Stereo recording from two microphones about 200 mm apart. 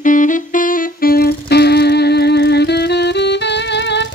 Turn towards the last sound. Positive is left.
turn(degrees=60)  # may be behind; listen again after turning